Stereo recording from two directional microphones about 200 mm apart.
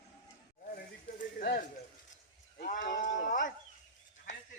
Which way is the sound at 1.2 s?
50° left (ahead or behind).